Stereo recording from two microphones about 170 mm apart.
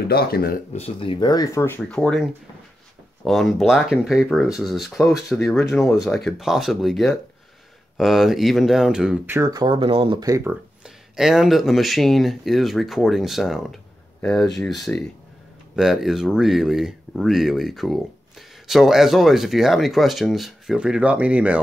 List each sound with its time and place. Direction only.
0.1 s speech: 65° left (ahead or behind)
0.7 s speech: 35° left (ahead or behind); by 1.8 s 15° left (ahead or behind)
1.9 s speech: 5° left (ahead or behind)
3.3 s speech: centre (ahead or behind); by 10.5 s 20° right (ahead or behind)
11.1 s speech: 5° right (ahead or behind)